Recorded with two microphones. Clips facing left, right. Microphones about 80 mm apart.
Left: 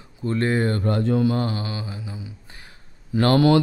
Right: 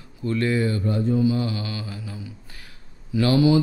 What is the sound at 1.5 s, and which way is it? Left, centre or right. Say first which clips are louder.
Mantra: left 1 dB; left.